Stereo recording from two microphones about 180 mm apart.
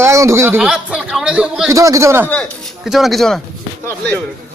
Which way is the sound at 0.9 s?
5° right (ahead or behind).